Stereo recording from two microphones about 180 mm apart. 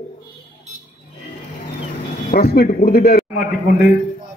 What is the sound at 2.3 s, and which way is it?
Speech, 55° left (ahead or behind).